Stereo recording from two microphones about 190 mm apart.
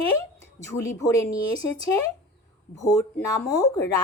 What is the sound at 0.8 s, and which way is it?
Speech, 15° left (ahead or behind).